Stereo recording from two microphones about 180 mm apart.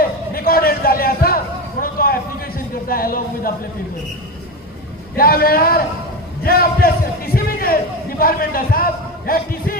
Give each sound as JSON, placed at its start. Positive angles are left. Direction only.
{"t": 0.0, "sound": "a sound", "side_deg": 55}
{"t": 5.1, "sound": "a man's voice", "side_deg": 55}
{"t": 6.4, "sound": "music", "side_deg": 55}
{"t": 8.2, "sound": "a man's voice", "side_deg": 55}